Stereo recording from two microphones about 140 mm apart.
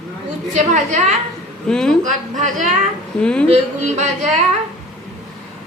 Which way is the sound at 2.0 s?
60° right (ahead or behind).